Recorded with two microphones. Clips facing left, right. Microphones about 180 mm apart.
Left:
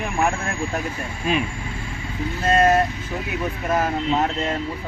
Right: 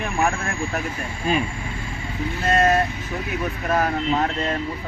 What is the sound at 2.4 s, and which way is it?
Speech, 25° left (ahead or behind).